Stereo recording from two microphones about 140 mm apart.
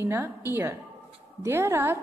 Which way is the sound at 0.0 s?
15° right (ahead or behind).